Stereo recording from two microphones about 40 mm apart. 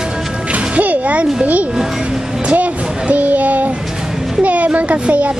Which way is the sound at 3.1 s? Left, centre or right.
Right.